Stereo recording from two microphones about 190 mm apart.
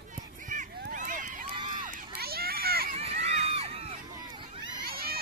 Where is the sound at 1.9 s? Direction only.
55° right (ahead or behind).